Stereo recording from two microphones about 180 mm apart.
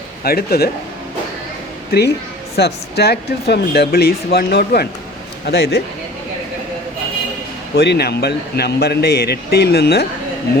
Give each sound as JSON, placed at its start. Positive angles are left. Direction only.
{"t": 0.3, "sound": "speech", "side_deg": 60}
{"t": 1.9, "sound": "speech", "side_deg": 65}
{"t": 7.8, "sound": "speech", "side_deg": 65}